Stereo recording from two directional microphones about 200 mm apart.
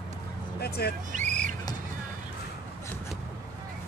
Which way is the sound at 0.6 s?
50° left (ahead or behind).